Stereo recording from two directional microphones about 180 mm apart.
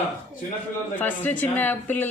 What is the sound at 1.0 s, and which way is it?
Speech, 10° left (ahead or behind).